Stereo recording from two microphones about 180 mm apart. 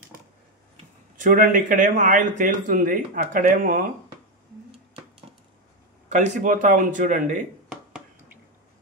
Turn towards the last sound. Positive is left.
turn(degrees=-45)  # may be behind; listen again after turning